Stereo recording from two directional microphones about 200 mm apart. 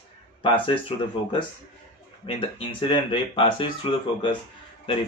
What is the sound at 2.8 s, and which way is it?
Speech, 25° left (ahead or behind).